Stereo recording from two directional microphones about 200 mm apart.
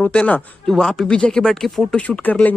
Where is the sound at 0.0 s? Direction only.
5° left (ahead or behind).